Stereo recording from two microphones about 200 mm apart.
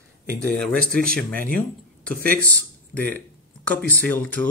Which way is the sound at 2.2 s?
50° right (ahead or behind).